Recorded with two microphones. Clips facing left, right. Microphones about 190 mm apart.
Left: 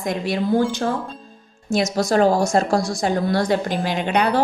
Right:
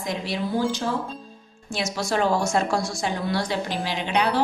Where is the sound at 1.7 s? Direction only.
40° left (ahead or behind).